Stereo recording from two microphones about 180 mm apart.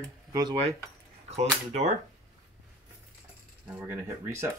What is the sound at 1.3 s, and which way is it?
Speech, 40° right (ahead or behind).